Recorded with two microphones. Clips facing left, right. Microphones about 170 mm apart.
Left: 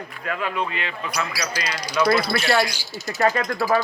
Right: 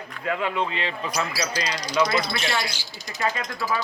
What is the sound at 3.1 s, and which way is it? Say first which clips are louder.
Speech: left 7 dB; 50° left (ahead or behind).